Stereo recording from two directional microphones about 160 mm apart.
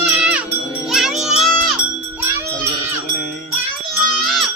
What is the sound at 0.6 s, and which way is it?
Tubular bells, 20° left (ahead or behind).